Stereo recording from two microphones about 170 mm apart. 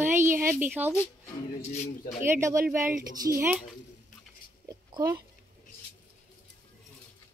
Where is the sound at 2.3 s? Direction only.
15° right (ahead or behind).